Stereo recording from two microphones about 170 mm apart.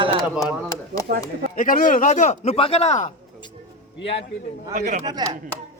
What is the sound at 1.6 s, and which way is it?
A man's voice, 50° left (ahead or behind).